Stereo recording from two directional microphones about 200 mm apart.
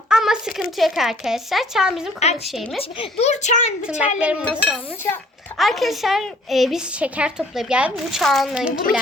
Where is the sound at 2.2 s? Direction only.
35° left (ahead or behind).